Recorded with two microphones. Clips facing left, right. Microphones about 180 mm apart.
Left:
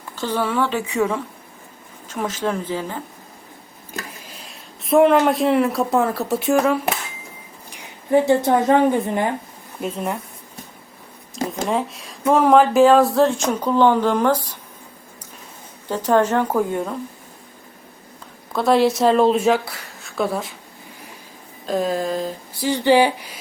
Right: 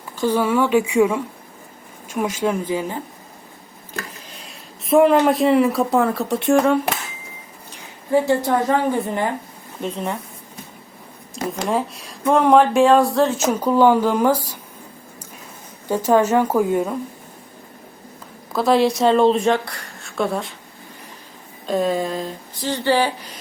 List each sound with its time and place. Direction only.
0.2 s speech: 10° right (ahead or behind)
4.4 s speech: centre (ahead or behind)
7.7 s a woman's voice: 20° left (ahead or behind)
9.8 s speech: 5° left (ahead or behind)
11.6 s speech: centre (ahead or behind)
15.9 s speech: 10° right (ahead or behind)
18.5 s speech: centre (ahead or behind)
21.7 s speech: centre (ahead or behind)
22.6 s speech: 15° left (ahead or behind)